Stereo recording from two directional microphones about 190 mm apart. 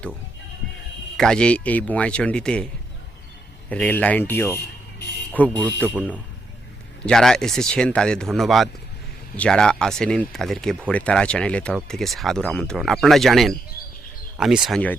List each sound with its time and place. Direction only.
1.1 s speech: 5° left (ahead or behind)
3.7 s speech: 5° left (ahead or behind)
7.0 s speech: 5° left (ahead or behind)